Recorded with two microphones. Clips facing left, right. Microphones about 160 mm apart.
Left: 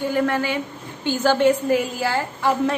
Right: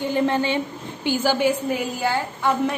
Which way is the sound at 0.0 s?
20° right (ahead or behind).